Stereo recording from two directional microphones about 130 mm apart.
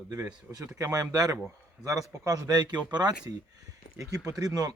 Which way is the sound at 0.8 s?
25° right (ahead or behind).